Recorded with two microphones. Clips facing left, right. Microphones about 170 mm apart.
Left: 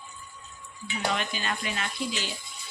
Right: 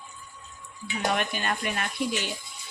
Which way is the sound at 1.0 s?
55° right (ahead or behind).